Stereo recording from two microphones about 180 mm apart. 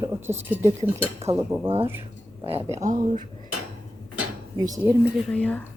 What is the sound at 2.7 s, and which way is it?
Speech, 40° right (ahead or behind).